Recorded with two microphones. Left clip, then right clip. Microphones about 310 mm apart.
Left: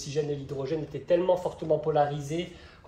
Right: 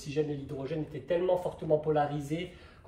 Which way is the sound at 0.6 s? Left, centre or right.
Centre.